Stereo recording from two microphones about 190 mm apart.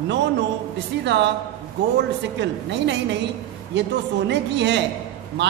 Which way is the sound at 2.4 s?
70° right (ahead or behind).